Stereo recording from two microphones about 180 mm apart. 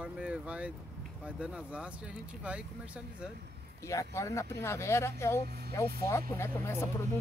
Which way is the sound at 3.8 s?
15° left (ahead or behind).